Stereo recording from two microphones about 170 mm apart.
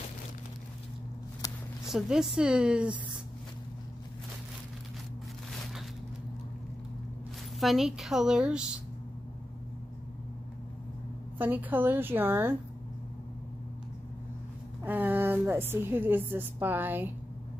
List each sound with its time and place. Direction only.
1.4 s a sound: 20° left (ahead or behind)
1.9 s a woman's voice: centre (ahead or behind)
7.6 s a woman's voice: centre (ahead or behind)
11.3 s a woman's voice: 10° right (ahead or behind)
14.9 s a woman's voice: 10° right (ahead or behind)